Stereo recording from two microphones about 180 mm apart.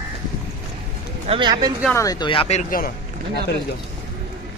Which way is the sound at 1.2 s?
30° right (ahead or behind).